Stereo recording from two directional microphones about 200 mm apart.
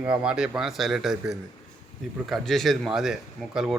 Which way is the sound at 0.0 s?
5° right (ahead or behind).